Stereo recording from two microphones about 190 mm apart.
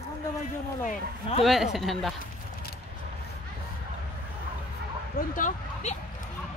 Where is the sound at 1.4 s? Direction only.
Centre (ahead or behind).